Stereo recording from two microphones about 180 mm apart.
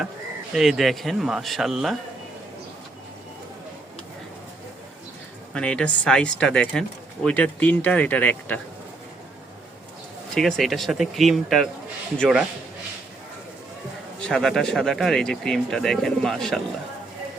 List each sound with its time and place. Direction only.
0.5 s speech: centre (ahead or behind)
5.5 s speech: 5° left (ahead or behind)
10.3 s speech: centre (ahead or behind)
14.2 s speech: 5° left (ahead or behind)